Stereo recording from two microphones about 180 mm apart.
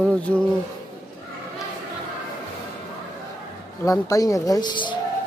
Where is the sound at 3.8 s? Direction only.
20° left (ahead or behind).